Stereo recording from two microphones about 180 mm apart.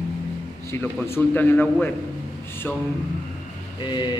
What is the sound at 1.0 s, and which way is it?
Speech, 10° left (ahead or behind).